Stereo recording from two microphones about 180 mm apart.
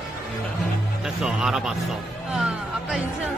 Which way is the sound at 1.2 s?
5° right (ahead or behind).